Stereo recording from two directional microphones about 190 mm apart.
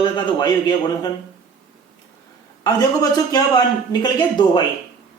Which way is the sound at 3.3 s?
20° left (ahead or behind).